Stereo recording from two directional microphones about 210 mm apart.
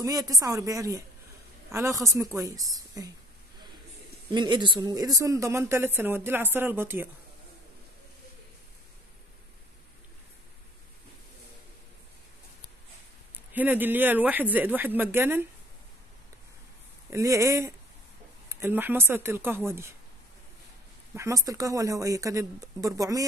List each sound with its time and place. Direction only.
0.0 s speech: 15° right (ahead or behind)
4.3 s speech: 20° right (ahead or behind)
13.5 s speech: 10° right (ahead or behind)
17.1 s speech: 15° right (ahead or behind)
21.1 s speech: 15° right (ahead or behind)